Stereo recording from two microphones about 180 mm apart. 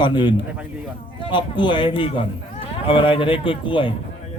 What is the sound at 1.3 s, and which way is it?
A man's voice, 25° left (ahead or behind).